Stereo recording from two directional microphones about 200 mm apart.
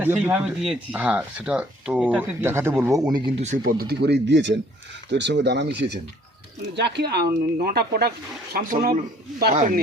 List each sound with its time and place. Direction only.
0.0 s speech: 10° right (ahead or behind)
3.4 s speech: 40° right (ahead or behind)